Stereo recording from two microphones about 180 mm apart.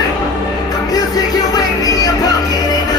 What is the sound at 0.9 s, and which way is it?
Music, 20° left (ahead or behind).